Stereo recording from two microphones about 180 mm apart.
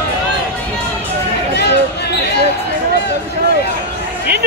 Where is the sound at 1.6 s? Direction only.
70° left (ahead or behind).